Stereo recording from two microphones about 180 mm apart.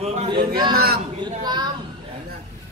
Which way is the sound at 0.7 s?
60° right (ahead or behind).